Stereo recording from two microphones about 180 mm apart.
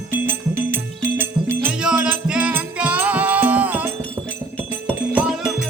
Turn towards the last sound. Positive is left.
turn(degrees=-5)  # may be behind; listen again after turning